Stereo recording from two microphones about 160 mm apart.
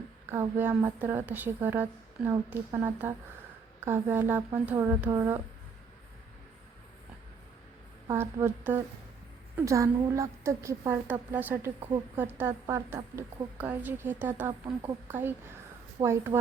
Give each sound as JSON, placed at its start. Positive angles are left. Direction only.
{"t": 0.3, "sound": "a woman's voice", "side_deg": -15}
{"t": 8.1, "sound": "a woman's voice", "side_deg": -15}